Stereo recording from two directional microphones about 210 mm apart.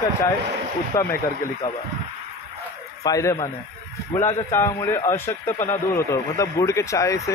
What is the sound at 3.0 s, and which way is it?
A man's voice, 15° left (ahead or behind).